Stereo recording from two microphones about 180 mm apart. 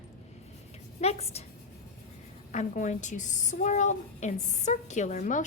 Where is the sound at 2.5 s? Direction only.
40° left (ahead or behind).